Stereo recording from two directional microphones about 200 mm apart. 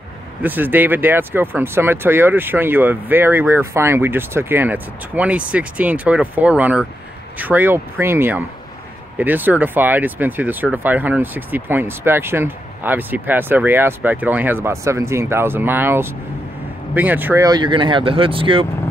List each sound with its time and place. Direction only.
0.4 s speech: 10° right (ahead or behind); by 18.7 s 25° right (ahead or behind)